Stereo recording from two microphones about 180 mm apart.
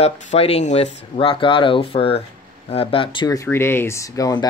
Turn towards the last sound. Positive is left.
turn(degrees=20)  # may be behind; listen again after turning